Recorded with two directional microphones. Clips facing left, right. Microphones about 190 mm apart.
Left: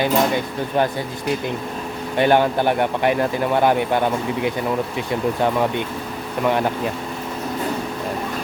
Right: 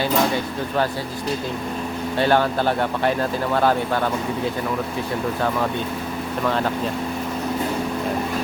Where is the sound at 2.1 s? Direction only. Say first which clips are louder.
Left 3 dB; 15° left (ahead or behind).